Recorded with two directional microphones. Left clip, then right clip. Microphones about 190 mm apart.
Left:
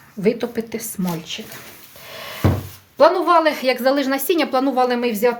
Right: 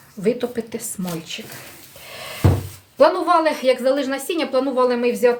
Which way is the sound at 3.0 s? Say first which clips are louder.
Left 1 dB; 25° left (ahead or behind).